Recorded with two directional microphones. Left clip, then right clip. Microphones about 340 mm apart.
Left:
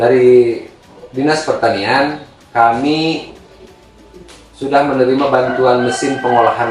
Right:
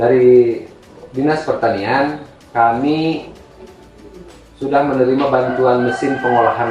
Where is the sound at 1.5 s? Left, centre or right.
Centre.